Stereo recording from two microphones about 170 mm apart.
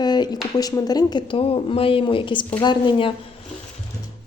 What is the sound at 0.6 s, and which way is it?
A woman's voice, 25° left (ahead or behind).